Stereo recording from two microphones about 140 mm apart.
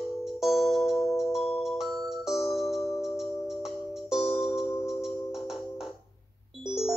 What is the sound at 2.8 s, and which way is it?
Music, 20° left (ahead or behind).